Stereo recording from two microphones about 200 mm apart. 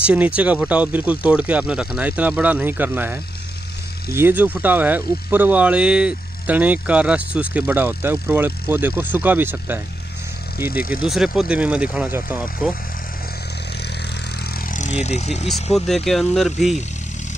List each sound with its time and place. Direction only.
0.0 s speech: 5° right (ahead or behind)
11.1 s speech: centre (ahead or behind)
14.7 s speech: 35° left (ahead or behind)
15.7 s speech: centre (ahead or behind)